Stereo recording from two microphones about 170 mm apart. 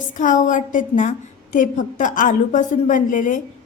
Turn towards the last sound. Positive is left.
turn(degrees=50)  # may be behind; listen again after turning